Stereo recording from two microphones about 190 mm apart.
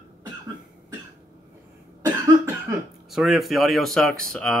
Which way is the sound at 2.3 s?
15° right (ahead or behind).